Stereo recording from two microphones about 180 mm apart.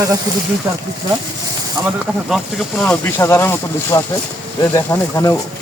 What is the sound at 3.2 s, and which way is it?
Speech, 15° left (ahead or behind).